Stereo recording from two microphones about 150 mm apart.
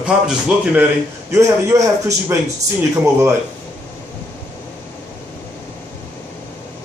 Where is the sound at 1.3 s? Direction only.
20° right (ahead or behind).